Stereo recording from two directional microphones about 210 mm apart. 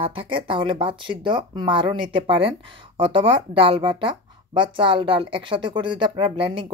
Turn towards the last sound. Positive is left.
turn(degrees=-25)  # may be behind; listen again after turning